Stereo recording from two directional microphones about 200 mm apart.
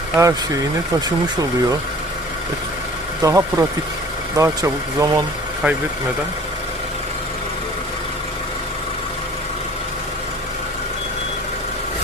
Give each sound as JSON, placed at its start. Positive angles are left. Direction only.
{"t": 0.2, "sound": "speech", "side_deg": -15}
{"t": 3.2, "sound": "speech", "side_deg": -15}